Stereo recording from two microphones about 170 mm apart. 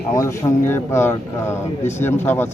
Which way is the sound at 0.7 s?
15° left (ahead or behind).